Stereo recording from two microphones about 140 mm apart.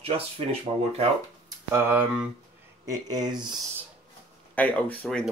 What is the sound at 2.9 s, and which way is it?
Speech, 25° right (ahead or behind).